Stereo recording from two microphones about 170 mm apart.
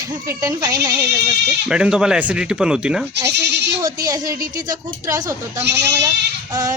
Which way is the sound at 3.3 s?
90° right.